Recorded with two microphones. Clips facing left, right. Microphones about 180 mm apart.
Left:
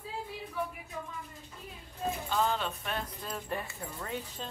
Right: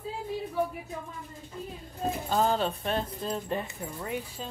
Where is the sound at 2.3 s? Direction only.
40° right (ahead or behind); by 4.4 s 10° right (ahead or behind).